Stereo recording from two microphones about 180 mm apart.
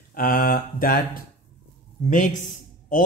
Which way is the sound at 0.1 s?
55° left (ahead or behind).